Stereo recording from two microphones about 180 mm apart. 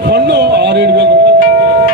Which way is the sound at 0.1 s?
70° right (ahead or behind).